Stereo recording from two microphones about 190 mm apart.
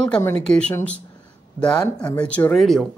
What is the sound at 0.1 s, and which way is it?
Speech, 10° left (ahead or behind).